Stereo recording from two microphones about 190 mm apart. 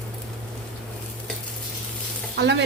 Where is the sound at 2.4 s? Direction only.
65° right (ahead or behind).